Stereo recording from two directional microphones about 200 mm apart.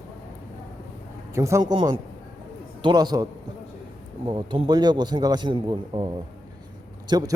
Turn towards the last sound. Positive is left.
turn(degrees=-20)  # may be behind; listen again after turning